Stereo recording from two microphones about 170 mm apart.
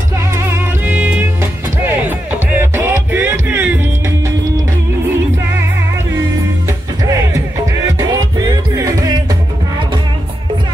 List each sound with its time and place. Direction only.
0.3 s music: 15° right (ahead or behind)
7.1 s music: 20° right (ahead or behind)